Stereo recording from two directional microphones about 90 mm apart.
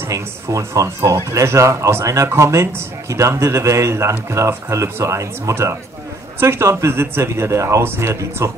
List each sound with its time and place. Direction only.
0.1 s speech: 35° right (ahead or behind)